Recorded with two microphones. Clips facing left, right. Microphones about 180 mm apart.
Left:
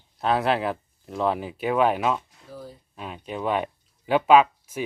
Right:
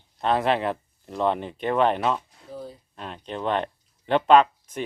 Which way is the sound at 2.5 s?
25° right (ahead or behind).